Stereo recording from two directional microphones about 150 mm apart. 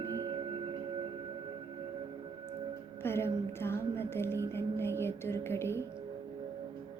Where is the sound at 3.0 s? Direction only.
15° left (ahead or behind).